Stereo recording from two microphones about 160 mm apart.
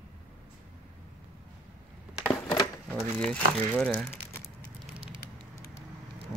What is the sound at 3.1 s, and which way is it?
Speech, 5° left (ahead or behind).